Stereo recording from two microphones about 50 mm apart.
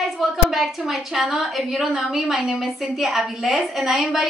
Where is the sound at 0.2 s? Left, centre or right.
Centre.